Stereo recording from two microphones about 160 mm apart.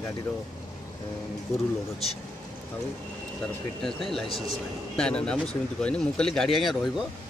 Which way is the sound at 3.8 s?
Centre (ahead or behind).